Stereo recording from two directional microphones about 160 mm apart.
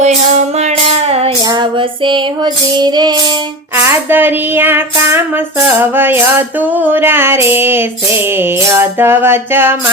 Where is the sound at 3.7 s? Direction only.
15° right (ahead or behind).